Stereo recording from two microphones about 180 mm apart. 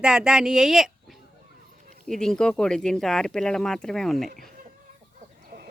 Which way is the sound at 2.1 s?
5° left (ahead or behind).